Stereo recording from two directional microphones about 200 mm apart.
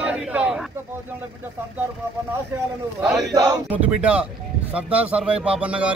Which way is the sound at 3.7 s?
5° right (ahead or behind).